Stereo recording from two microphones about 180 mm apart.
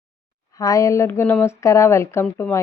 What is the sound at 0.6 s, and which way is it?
A woman's voice, 20° left (ahead or behind).